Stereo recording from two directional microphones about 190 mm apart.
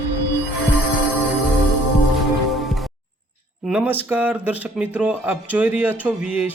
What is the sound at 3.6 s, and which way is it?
A man's voice, 5° right (ahead or behind).